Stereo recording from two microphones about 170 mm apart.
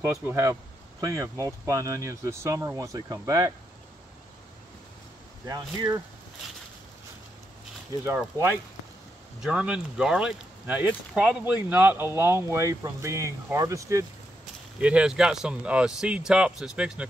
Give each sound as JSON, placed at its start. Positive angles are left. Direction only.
{"t": 0.0, "sound": "speech", "side_deg": -15}
{"t": 5.5, "sound": "speech", "side_deg": -25}
{"t": 8.0, "sound": "speech", "side_deg": -10}
{"t": 14.8, "sound": "speech", "side_deg": -5}